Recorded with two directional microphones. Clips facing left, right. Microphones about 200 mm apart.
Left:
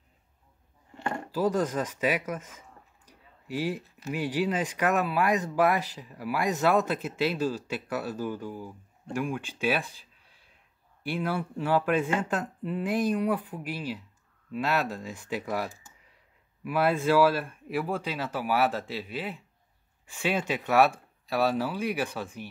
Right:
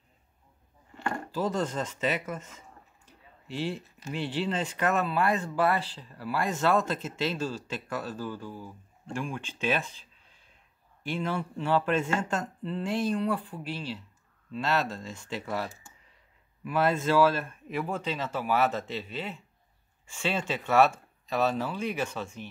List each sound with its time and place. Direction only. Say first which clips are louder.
0.9 s a sound: even; 25° left (ahead or behind)
1.3 s speech: left 4 dB; 10° left (ahead or behind)
3.4 s speech: left 2 dB; 10° left (ahead or behind)
11.1 s speech: left 1 dB; 10° left (ahead or behind)